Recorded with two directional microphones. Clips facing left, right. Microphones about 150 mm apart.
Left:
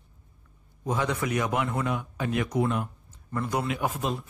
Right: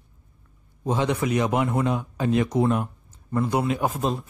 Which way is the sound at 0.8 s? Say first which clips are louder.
Right 4 dB; 25° right (ahead or behind).